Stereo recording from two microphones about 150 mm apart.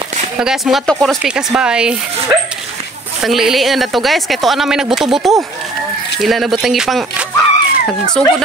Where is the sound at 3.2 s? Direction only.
Centre (ahead or behind).